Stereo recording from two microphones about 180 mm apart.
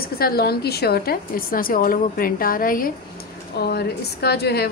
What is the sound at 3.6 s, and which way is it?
A woman's voice, 60° left (ahead or behind).